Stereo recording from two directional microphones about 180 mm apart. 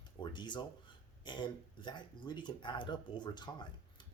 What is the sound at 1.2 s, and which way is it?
Speech, 25° left (ahead or behind).